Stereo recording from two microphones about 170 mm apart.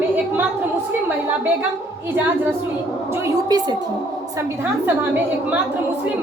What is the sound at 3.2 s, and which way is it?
Speech, 25° right (ahead or behind).